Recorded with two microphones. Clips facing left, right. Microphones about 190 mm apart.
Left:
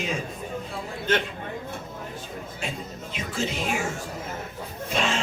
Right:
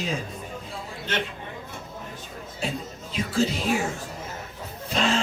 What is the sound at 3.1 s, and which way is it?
Speech, 35° right (ahead or behind).